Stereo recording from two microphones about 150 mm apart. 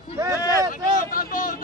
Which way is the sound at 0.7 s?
65° left (ahead or behind).